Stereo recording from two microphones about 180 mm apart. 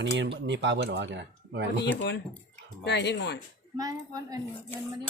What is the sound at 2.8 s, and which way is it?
Speech, 70° left (ahead or behind).